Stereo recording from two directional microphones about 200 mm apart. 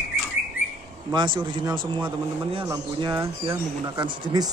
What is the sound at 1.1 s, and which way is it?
Speech, 20° right (ahead or behind).